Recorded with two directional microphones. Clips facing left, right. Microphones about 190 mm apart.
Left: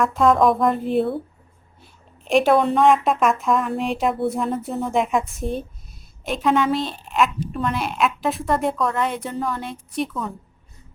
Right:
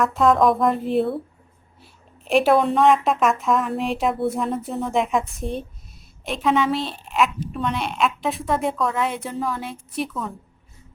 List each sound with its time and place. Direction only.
0.0 s a woman's voice: centre (ahead or behind)